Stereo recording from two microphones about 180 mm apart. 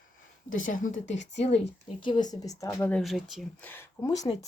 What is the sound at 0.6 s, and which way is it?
Speech, 45° left (ahead or behind).